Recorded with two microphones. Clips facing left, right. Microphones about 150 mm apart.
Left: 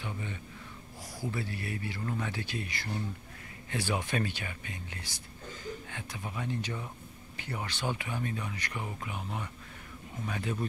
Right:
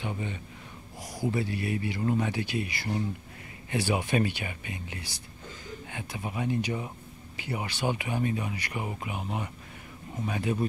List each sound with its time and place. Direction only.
0.0 s speech: 20° right (ahead or behind)